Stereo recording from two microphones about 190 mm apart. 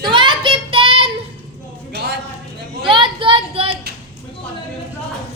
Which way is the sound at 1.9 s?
65° right (ahead or behind).